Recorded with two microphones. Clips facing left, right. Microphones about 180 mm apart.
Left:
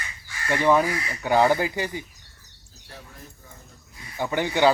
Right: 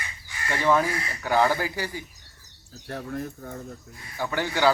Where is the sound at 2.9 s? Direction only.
60° right (ahead or behind).